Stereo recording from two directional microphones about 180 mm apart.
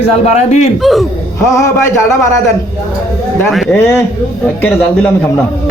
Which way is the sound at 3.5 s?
Centre (ahead or behind).